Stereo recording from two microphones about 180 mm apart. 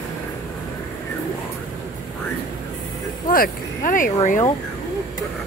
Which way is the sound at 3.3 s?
50° left (ahead or behind).